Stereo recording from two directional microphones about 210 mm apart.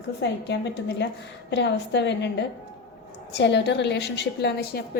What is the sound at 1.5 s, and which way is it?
A woman's voice, 55° left (ahead or behind).